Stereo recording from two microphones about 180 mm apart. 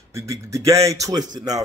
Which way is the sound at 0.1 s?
15° right (ahead or behind).